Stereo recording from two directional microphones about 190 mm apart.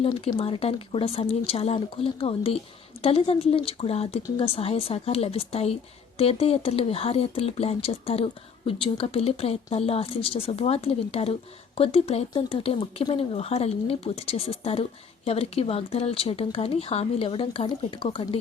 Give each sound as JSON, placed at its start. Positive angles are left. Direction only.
{"t": 0.0, "sound": "speech", "side_deg": 25}